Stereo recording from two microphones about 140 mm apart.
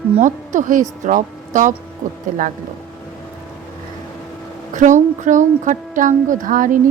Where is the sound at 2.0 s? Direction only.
65° right (ahead or behind).